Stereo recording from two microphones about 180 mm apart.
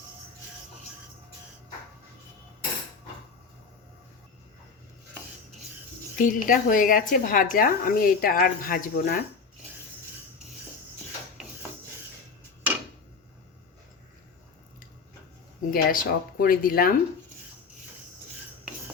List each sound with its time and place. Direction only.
6.1 s a woman's voice: 50° left (ahead or behind)
15.7 s a woman's voice: 50° left (ahead or behind)